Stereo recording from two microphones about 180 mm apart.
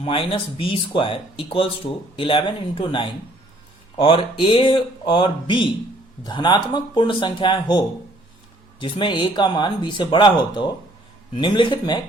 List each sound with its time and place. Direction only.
0.0 s speech: 30° left (ahead or behind)